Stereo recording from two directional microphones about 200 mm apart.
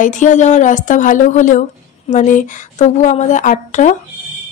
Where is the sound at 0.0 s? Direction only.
40° left (ahead or behind).